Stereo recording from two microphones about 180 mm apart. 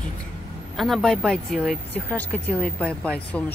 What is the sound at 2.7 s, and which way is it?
Speech, 10° right (ahead or behind).